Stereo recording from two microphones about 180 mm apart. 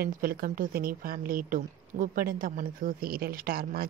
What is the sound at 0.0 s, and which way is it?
A woman's voice, 55° right (ahead or behind).